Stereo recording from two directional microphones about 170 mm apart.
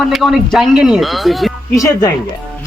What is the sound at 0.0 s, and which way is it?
Speech, centre (ahead or behind).